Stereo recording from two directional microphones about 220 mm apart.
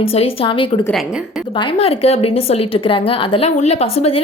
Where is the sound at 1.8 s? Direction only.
25° left (ahead or behind).